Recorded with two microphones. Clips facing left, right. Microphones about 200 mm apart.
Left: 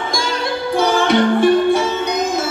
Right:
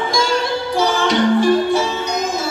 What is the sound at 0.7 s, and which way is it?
Music, 55° left (ahead or behind).